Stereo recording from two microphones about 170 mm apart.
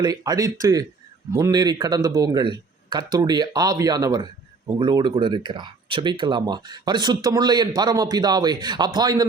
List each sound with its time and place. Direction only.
0.0 s speech: 20° right (ahead or behind)